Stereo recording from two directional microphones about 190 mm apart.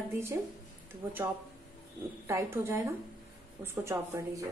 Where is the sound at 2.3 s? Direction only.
15° right (ahead or behind).